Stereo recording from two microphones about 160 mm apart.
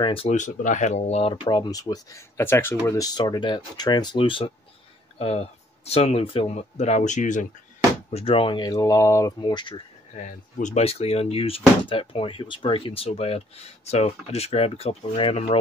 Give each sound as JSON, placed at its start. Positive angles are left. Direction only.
{"t": 0.0, "sound": "speech", "side_deg": 35}
{"t": 0.4, "sound": "speech", "side_deg": 50}
{"t": 8.1, "sound": "speech", "side_deg": 40}
{"t": 10.1, "sound": "speech", "side_deg": 50}